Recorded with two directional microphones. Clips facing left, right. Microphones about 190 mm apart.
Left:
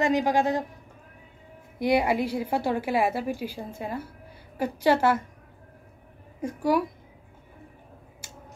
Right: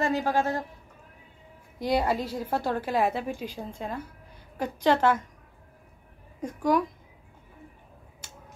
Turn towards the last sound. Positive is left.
turn(degrees=10)  # may be behind; listen again after turning